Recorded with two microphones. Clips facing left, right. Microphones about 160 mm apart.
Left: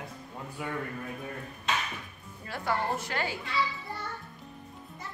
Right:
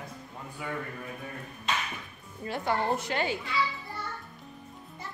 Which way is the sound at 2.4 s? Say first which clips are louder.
Right 2 dB; 20° right (ahead or behind).